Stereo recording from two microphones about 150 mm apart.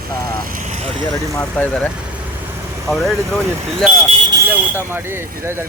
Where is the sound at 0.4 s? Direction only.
60° right (ahead or behind).